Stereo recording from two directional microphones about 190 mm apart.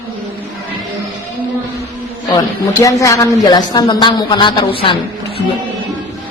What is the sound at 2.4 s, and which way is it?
Speech, 15° left (ahead or behind).